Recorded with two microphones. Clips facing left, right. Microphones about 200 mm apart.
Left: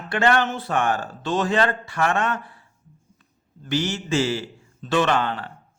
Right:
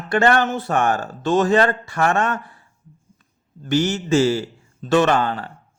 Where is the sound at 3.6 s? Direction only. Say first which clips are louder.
Right 5 dB; 45° right (ahead or behind).